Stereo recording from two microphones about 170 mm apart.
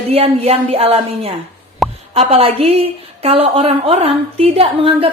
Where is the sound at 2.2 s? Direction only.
35° right (ahead or behind).